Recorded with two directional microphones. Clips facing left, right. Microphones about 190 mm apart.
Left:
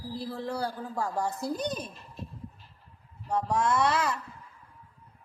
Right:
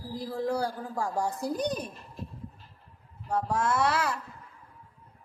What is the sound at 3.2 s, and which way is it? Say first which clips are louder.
Speech: left 1 dB; 5° right (ahead or behind).